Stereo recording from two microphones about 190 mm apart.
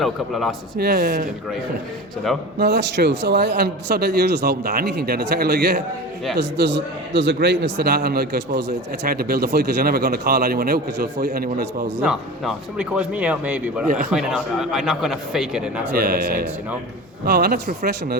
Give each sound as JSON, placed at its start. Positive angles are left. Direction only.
{"t": 0.0, "sound": "speech", "side_deg": 0}
{"t": 0.8, "sound": "speech", "side_deg": -55}
{"t": 2.6, "sound": "a man's voice", "side_deg": -60}
{"t": 12.0, "sound": "speech", "side_deg": -5}
{"t": 13.8, "sound": "a man's voice", "side_deg": -50}
{"t": 14.1, "sound": "speech", "side_deg": -5}
{"t": 16.0, "sound": "a man's voice", "side_deg": -50}